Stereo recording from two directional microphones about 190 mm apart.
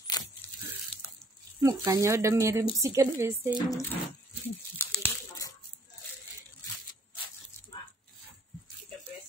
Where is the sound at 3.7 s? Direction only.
15° left (ahead or behind).